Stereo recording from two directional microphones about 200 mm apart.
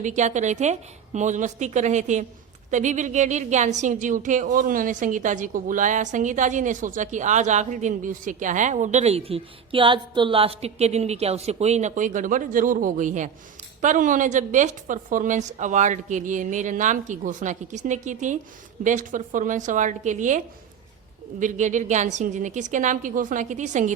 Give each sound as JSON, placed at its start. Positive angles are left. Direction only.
{"t": 0.0, "sound": "a woman's voice", "side_deg": -35}